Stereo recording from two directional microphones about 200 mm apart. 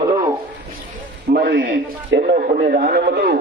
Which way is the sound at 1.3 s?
50° right (ahead or behind).